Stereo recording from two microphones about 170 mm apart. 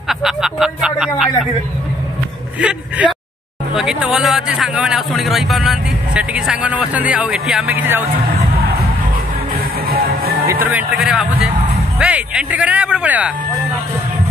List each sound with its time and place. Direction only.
0.1 s speech: centre (ahead or behind)
3.0 s speech: 10° right (ahead or behind)
9.8 s music: 60° right (ahead or behind)
10.4 s speech: 15° right (ahead or behind)